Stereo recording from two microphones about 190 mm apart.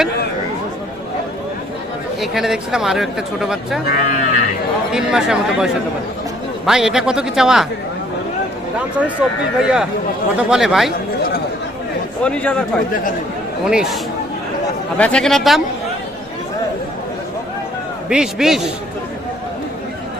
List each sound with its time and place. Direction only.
2.2 s speech: centre (ahead or behind)
3.9 s speech: 40° left (ahead or behind)
4.9 s speech: 5° right (ahead or behind)
9.6 s speech: 5° right (ahead or behind)
12.2 s speech: 5° left (ahead or behind)
18.1 s speech: 5° right (ahead or behind)